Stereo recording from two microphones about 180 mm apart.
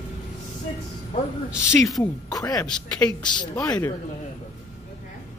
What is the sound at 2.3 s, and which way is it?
A woman's voice, 20° left (ahead or behind).